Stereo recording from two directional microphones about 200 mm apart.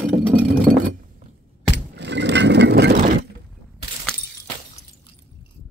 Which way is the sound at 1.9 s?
60° right (ahead or behind).